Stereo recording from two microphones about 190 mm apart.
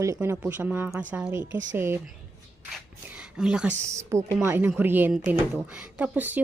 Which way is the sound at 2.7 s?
5° right (ahead or behind).